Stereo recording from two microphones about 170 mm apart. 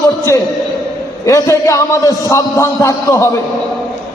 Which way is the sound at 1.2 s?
20° left (ahead or behind).